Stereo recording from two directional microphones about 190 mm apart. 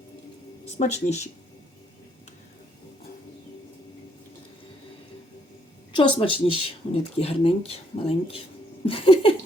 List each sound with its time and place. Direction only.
0.6 s speech: 35° left (ahead or behind)
6.0 s speech: 25° left (ahead or behind)